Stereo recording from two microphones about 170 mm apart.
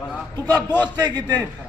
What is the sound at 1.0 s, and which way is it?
Speech, 25° right (ahead or behind).